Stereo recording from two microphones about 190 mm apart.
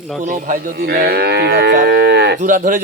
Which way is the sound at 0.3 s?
45° right (ahead or behind).